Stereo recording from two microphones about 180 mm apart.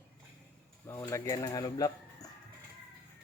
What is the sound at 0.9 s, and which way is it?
Speech, 15° left (ahead or behind).